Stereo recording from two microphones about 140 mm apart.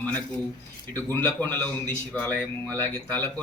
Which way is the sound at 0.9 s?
15° left (ahead or behind).